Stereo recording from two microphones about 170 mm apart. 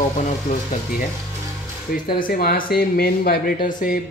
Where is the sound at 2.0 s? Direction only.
60° left (ahead or behind).